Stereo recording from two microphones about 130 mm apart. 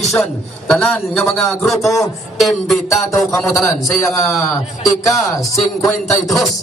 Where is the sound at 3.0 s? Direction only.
Centre (ahead or behind).